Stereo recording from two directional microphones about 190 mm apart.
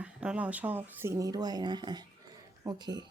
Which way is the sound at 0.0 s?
5° right (ahead or behind).